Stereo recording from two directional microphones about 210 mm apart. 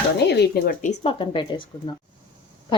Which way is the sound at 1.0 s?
25° left (ahead or behind).